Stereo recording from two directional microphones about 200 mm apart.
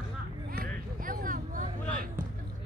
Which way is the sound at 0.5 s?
45° right (ahead or behind).